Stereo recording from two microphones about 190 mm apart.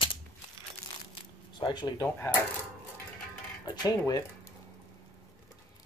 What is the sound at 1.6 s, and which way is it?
Speech, 20° left (ahead or behind).